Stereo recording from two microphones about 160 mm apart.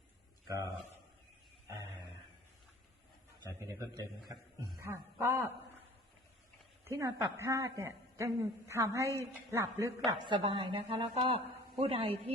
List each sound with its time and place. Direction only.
0.4 s a man's voice: 20° right (ahead or behind)
4.9 s a woman's voice: 15° right (ahead or behind)
6.8 s a woman's voice: 15° right (ahead or behind)
10.1 s a woman's voice: 30° right (ahead or behind)